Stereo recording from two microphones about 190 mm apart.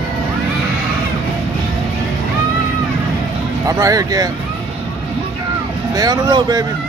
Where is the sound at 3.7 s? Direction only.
15° right (ahead or behind).